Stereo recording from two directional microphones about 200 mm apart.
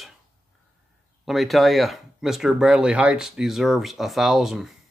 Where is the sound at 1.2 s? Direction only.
Centre (ahead or behind).